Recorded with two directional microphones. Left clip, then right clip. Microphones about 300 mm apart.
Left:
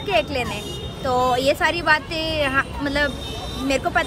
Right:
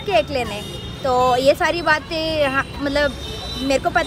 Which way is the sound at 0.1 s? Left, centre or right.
Centre.